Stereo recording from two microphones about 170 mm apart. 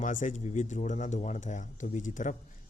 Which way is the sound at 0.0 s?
50° left (ahead or behind).